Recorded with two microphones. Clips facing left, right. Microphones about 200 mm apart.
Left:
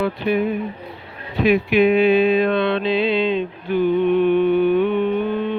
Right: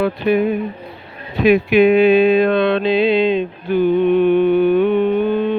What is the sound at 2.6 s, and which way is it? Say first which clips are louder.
Music: right 4 dB; 45° right (ahead or behind).